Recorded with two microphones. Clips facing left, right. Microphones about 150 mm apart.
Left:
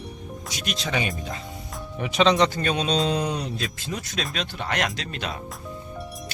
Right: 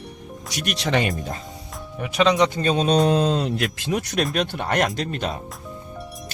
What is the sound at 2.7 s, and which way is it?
Speech, 50° right (ahead or behind).